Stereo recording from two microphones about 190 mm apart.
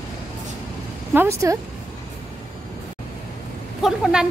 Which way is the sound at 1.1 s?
15° right (ahead or behind).